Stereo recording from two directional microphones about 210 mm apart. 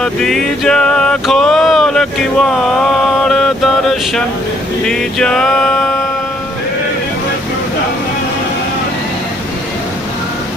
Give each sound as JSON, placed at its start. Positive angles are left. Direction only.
{"t": 0.0, "sound": "a sound", "side_deg": 0}
{"t": 3.2, "sound": "mantra", "side_deg": 0}
{"t": 4.9, "sound": "music", "side_deg": 0}